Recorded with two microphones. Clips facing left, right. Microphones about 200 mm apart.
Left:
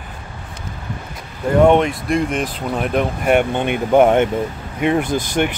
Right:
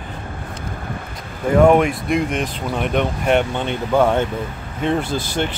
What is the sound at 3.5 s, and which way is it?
Speech, 15° left (ahead or behind).